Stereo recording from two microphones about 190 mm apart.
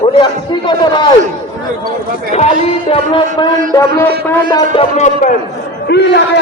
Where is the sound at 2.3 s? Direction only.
35° left (ahead or behind).